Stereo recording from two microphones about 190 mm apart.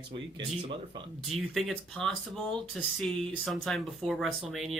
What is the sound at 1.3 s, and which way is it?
Speech, centre (ahead or behind).